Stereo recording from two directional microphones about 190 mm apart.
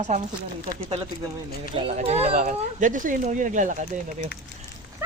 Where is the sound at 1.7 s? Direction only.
30° right (ahead or behind).